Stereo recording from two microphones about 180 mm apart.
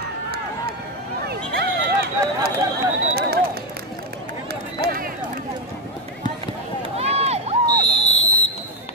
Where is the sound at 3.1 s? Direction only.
60° right (ahead or behind).